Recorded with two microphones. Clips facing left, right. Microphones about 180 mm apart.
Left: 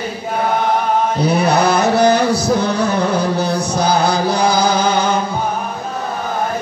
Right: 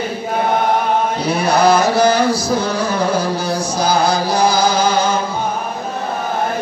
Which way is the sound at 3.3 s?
60° left (ahead or behind).